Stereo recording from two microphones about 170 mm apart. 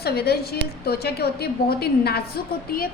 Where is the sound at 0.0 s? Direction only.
70° left (ahead or behind).